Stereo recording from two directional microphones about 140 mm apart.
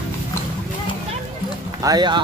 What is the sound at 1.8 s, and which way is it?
Speech, 30° right (ahead or behind).